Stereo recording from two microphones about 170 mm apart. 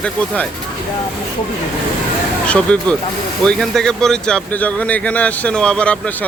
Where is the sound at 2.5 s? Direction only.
5° left (ahead or behind).